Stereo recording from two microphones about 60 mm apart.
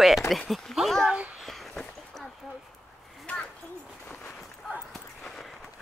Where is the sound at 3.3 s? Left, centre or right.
Left.